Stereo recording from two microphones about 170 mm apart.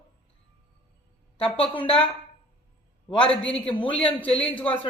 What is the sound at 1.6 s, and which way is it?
Speech, 30° left (ahead or behind).